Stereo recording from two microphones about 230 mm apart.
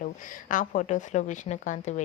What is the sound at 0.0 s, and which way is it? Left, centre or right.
A woman's voice, left.